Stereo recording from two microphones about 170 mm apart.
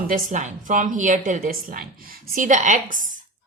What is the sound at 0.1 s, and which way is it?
A woman's voice, 45° right (ahead or behind).